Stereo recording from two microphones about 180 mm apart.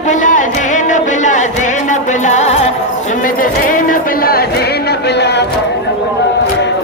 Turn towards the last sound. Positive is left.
turn(degrees=70)  # may be behind; listen again after turning